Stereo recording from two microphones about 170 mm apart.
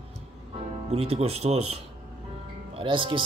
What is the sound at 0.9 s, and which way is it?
Speech, 35° right (ahead or behind).